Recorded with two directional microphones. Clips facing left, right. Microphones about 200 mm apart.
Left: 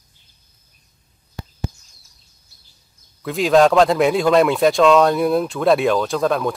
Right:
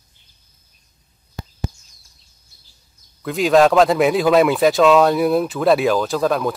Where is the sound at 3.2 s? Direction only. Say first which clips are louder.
Even; centre (ahead or behind).